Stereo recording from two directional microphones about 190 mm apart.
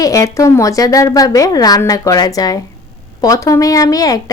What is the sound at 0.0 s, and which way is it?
Speech, 15° left (ahead or behind).